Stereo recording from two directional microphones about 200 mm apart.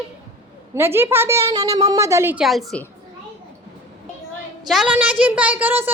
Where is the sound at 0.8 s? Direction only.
10° right (ahead or behind).